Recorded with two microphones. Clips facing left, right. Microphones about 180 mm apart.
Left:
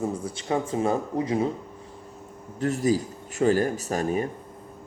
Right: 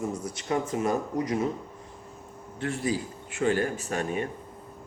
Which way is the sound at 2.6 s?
40° left (ahead or behind).